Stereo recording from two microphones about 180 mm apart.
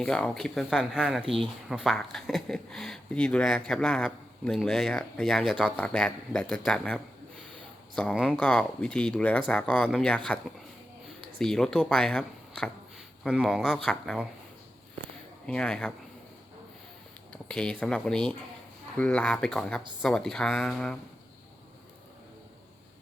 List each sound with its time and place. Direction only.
0.0 s speech: 5° left (ahead or behind)
1.2 s speech: 30° right (ahead or behind)
1.7 s speech: centre (ahead or behind)
11.3 s speech: 5° left (ahead or behind)
15.4 s speech: 5° left (ahead or behind)
17.3 s speech: 5° left (ahead or behind)